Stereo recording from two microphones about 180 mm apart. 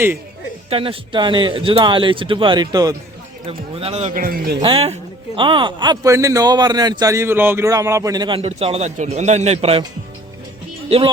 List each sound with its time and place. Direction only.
0.7 s a man's voice: 30° right (ahead or behind)
3.4 s speech: 35° right (ahead or behind)
4.1 s speech: 55° right (ahead or behind)
4.6 s a man's voice: 30° right (ahead or behind)
10.8 s speech: 30° right (ahead or behind)